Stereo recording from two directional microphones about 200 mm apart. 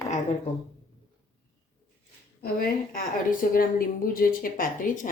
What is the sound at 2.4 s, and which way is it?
Speech, 45° left (ahead or behind).